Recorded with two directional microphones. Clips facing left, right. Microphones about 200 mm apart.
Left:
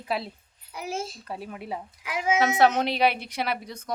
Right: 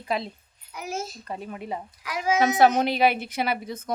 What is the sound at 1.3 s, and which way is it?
A woman's voice, 5° left (ahead or behind).